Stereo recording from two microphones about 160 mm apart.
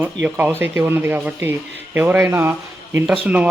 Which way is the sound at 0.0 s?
10° right (ahead or behind).